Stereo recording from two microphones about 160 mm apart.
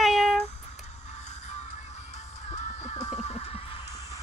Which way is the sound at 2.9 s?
15° left (ahead or behind).